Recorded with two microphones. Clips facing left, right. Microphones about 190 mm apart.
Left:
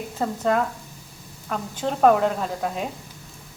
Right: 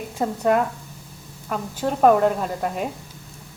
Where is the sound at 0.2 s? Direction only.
10° right (ahead or behind).